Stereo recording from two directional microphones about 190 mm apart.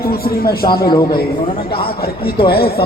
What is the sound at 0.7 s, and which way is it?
Speech, 25° left (ahead or behind).